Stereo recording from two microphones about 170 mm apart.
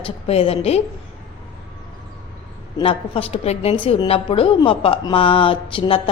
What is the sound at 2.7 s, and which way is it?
A woman's voice, 35° left (ahead or behind).